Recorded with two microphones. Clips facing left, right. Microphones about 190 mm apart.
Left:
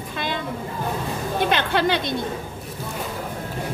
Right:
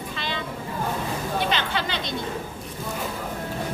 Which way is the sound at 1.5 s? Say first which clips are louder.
Left 6 dB; 55° left (ahead or behind).